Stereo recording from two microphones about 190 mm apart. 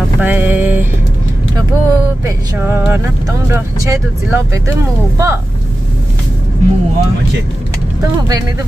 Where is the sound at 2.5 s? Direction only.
10° right (ahead or behind).